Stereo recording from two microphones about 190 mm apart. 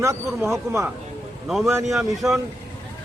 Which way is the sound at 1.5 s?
Centre (ahead or behind).